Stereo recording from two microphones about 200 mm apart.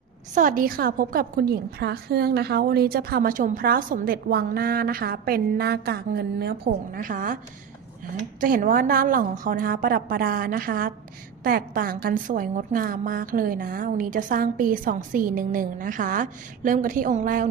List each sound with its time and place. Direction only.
0.3 s a woman's voice: 45° right (ahead or behind)